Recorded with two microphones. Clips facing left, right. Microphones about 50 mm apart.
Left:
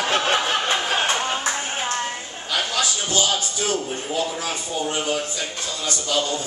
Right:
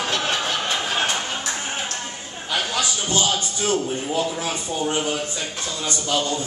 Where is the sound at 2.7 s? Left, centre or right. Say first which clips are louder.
Left 1 dB; right.